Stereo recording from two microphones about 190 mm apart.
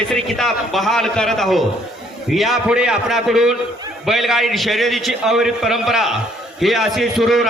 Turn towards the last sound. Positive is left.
turn(degrees=0)  # may be behind; listen again after turning